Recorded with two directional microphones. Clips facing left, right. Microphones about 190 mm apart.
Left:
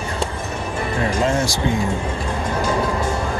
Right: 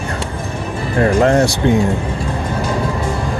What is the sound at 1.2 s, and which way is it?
Speech, 65° right (ahead or behind).